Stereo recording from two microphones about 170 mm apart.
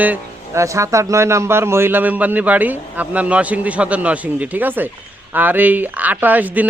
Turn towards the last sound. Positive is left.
turn(degrees=-10)  # may be behind; listen again after turning